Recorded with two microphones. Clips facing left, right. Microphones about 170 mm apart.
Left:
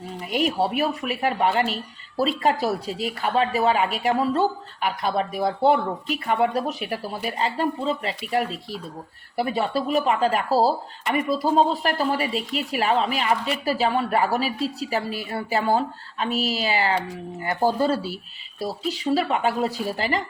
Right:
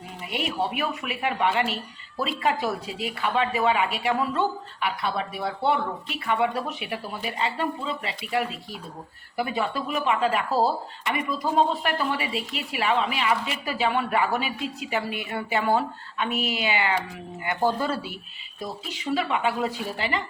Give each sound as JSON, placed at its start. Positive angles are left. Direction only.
{"t": 0.3, "sound": "speech", "side_deg": 40}